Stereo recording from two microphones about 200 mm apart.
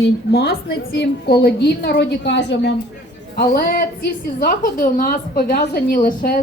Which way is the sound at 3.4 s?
50° left (ahead or behind).